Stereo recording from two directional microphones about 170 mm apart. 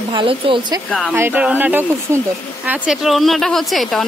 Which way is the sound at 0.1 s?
30° right (ahead or behind).